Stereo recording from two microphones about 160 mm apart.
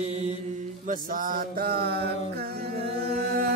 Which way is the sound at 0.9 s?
60° right (ahead or behind).